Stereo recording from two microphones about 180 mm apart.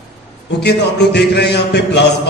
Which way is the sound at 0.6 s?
70° left (ahead or behind).